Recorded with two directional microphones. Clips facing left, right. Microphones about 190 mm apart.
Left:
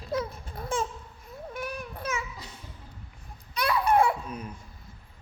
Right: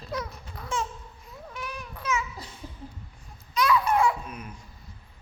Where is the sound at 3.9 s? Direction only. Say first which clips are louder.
Left 1 dB; 55° left (ahead or behind).